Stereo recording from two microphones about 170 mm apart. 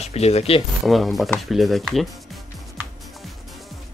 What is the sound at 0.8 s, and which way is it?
Speech, centre (ahead or behind).